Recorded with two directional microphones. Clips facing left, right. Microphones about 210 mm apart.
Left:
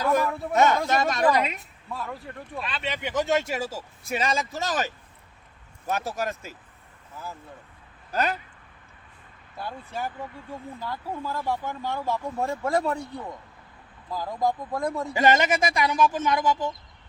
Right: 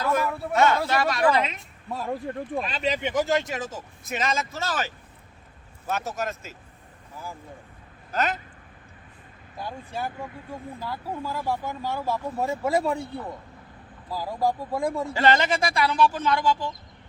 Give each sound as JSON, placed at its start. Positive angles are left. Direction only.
{"t": 0.0, "sound": "a sound", "side_deg": 15}
{"t": 0.5, "sound": "speech", "side_deg": 20}
{"t": 1.9, "sound": "speech", "side_deg": -40}
{"t": 3.2, "sound": "speech", "side_deg": 5}
{"t": 5.9, "sound": "speech", "side_deg": 15}
{"t": 9.6, "sound": "speech", "side_deg": -15}
{"t": 15.1, "sound": "speech", "side_deg": 15}